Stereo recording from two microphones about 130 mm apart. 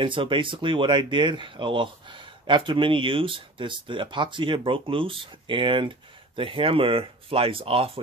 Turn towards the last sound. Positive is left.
turn(degrees=-45)  # may be behind; listen again after turning